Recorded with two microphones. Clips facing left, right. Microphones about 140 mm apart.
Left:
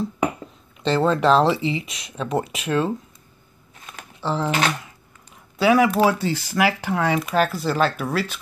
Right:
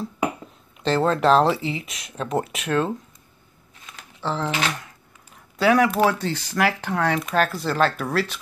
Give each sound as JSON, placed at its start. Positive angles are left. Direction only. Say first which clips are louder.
{"t": 0.8, "sound": "speech", "louder": "left 1 dB", "side_deg": 0}
{"t": 4.2, "sound": "speech", "louder": "left 2 dB", "side_deg": 10}
{"t": 5.6, "sound": "speech", "louder": "left 1 dB", "side_deg": 5}